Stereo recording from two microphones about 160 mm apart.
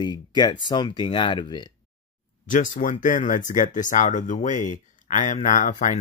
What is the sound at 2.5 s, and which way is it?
Speech, 55° left (ahead or behind).